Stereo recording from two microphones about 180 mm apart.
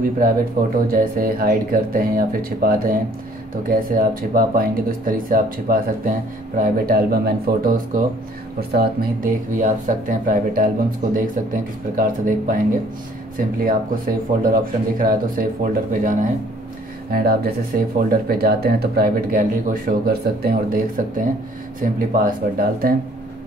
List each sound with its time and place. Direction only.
0.8 s speech: 50° right (ahead or behind)
17.1 s speech: 55° right (ahead or behind)